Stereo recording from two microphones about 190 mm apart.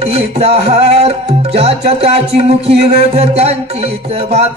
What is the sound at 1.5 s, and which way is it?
Speech, 30° right (ahead or behind).